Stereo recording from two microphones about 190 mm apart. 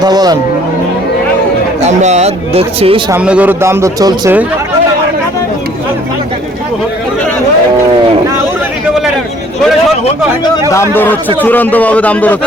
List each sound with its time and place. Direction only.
0.0 s speech: 20° right (ahead or behind)
1.8 s speech: 35° right (ahead or behind)
3.1 s a man's voice: 5° right (ahead or behind)
10.9 s a man's voice: 10° left (ahead or behind)